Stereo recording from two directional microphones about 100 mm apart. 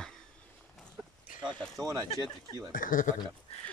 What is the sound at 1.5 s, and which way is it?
Speech, 5° left (ahead or behind).